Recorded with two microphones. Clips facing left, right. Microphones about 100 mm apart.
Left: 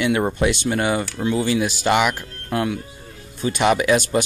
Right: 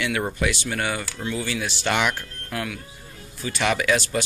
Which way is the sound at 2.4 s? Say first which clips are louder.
Left 9 dB; 30° left (ahead or behind).